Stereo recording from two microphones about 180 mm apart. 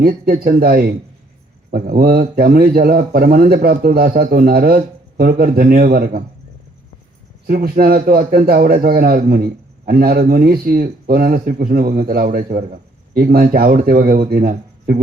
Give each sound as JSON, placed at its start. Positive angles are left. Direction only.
{"t": 0.0, "sound": "a man's voice", "side_deg": -55}
{"t": 7.4, "sound": "a man's voice", "side_deg": -55}